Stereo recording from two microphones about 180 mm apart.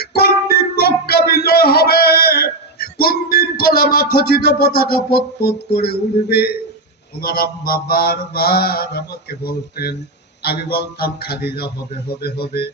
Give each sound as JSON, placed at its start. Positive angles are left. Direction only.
{"t": 0.0, "sound": "music", "side_deg": 60}
{"t": 5.7, "sound": "mantra", "side_deg": 60}